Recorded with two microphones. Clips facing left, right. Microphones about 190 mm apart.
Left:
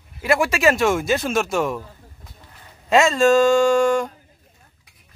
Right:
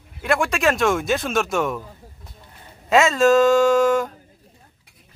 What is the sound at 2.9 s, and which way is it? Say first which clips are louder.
Speech: even; centre (ahead or behind).